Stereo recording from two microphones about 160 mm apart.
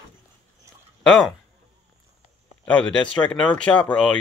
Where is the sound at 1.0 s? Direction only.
5° left (ahead or behind).